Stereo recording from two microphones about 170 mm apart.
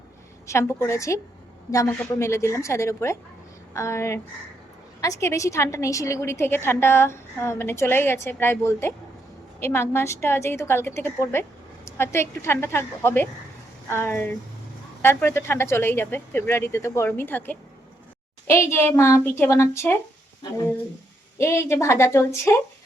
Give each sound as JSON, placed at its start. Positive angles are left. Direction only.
{"t": 0.4, "sound": "a woman's voice", "side_deg": 15}
{"t": 18.7, "sound": "a woman's voice", "side_deg": 15}
{"t": 21.3, "sound": "a woman's voice", "side_deg": 15}